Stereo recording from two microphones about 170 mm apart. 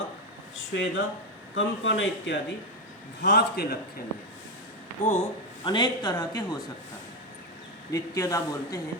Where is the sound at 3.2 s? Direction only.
75° left (ahead or behind).